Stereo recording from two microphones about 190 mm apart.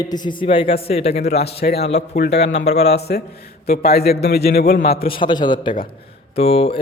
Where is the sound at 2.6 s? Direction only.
35° left (ahead or behind).